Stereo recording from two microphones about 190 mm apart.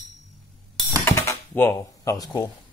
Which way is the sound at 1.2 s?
15° left (ahead or behind).